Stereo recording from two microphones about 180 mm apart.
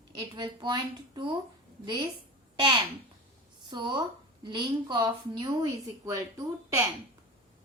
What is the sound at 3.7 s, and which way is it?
A woman's voice, 25° right (ahead or behind).